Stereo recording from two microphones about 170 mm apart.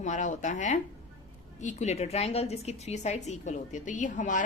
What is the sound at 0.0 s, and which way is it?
A woman's voice, 45° left (ahead or behind).